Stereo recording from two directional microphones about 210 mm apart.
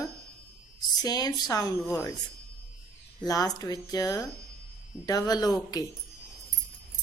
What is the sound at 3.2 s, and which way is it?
Mantra, 15° left (ahead or behind).